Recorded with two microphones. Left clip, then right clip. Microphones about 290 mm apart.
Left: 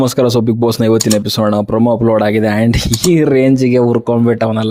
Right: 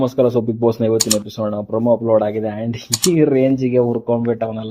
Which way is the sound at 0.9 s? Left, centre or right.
Centre.